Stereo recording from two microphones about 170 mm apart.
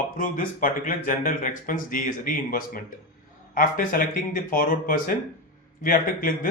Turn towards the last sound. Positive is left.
turn(degrees=55)  # may be behind; listen again after turning